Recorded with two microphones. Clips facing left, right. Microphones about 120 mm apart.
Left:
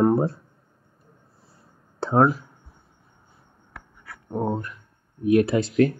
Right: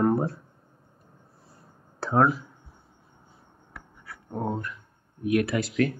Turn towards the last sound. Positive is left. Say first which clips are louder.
# left 5 dB
turn(degrees=30)  # may be behind; listen again after turning